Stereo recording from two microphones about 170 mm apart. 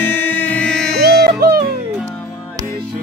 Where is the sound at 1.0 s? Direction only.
65° right (ahead or behind).